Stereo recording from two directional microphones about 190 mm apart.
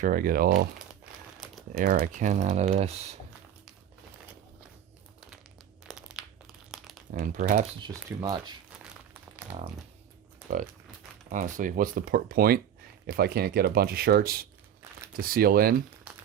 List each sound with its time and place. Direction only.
0.0 s speech: 45° right (ahead or behind)
1.7 s speech: 50° right (ahead or behind)
5.8 s crumpling: 5° right (ahead or behind)
7.1 s speech: 45° right (ahead or behind)
7.8 s speech: 20° right (ahead or behind)
9.5 s speech: 10° right (ahead or behind)
11.3 s speech: 45° right (ahead or behind)